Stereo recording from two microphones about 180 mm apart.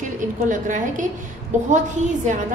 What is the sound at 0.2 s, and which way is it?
A woman's voice, 45° right (ahead or behind).